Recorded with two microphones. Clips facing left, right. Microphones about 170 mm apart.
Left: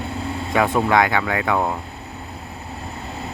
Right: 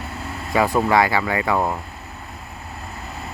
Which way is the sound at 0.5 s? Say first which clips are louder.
Even; centre (ahead or behind).